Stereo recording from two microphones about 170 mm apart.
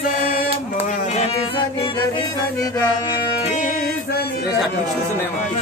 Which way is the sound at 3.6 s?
50° left (ahead or behind).